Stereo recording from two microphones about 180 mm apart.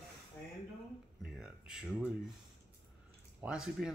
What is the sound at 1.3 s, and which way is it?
Speech, 5° right (ahead or behind).